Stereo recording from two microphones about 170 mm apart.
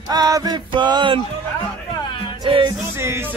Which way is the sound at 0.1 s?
25° right (ahead or behind).